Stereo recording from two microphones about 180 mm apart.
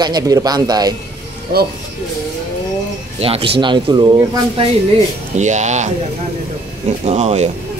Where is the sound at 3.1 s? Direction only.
30° right (ahead or behind).